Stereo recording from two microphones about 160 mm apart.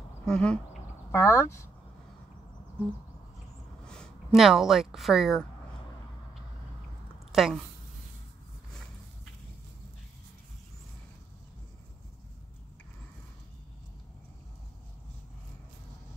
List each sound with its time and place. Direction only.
0.2 s speech: 5° left (ahead or behind)
1.1 s speech: 15° left (ahead or behind)
3.8 s speech: 5° left (ahead or behind)
7.3 s speech: centre (ahead or behind)